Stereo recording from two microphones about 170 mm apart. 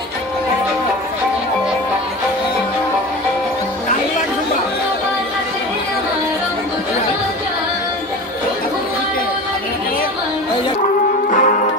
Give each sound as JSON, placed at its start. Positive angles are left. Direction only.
{"t": 11.2, "sound": "music", "side_deg": 50}